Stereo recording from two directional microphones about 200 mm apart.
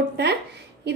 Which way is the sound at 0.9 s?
55° right (ahead or behind).